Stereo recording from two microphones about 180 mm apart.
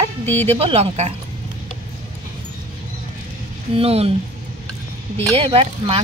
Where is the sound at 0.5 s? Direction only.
30° right (ahead or behind).